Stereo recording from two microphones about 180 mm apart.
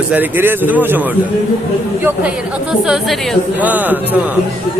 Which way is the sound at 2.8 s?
Centre (ahead or behind).